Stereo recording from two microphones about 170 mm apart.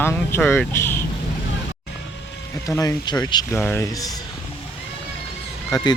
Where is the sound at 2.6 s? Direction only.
20° left (ahead or behind).